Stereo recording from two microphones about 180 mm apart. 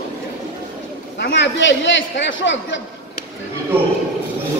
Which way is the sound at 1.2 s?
75° left (ahead or behind).